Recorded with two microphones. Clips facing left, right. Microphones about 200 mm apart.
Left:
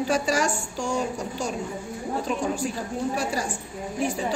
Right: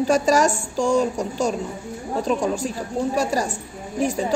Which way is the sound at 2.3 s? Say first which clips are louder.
Right 5 dB; 35° right (ahead or behind).